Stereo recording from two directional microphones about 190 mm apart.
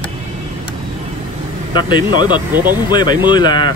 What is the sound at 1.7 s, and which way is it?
Speech, 25° left (ahead or behind).